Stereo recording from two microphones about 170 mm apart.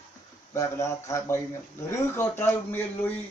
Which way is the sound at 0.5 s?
15° left (ahead or behind).